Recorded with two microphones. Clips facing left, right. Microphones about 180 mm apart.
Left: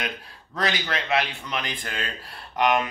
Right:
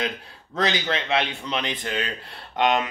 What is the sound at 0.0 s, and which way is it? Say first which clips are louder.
A man's voice: right 4 dB; 25° right (ahead or behind).